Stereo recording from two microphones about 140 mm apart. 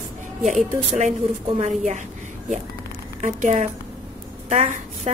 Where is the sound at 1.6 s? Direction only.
60° right (ahead or behind).